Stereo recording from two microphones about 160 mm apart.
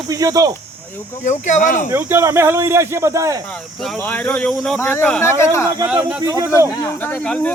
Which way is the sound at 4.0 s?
10° left (ahead or behind).